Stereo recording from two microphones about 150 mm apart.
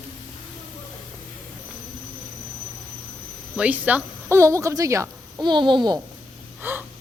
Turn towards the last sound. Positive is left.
turn(degrees=-15)  # may be behind; listen again after turning